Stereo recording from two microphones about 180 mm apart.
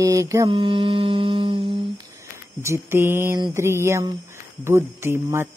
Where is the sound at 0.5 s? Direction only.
30° right (ahead or behind).